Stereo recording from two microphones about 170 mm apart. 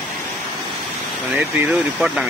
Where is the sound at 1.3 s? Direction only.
Centre (ahead or behind).